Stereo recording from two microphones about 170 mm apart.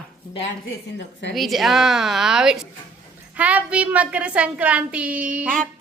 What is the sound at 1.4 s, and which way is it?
A woman's voice, centre (ahead or behind).